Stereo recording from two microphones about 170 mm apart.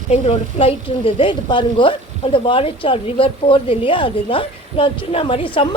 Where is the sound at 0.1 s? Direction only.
35° left (ahead or behind).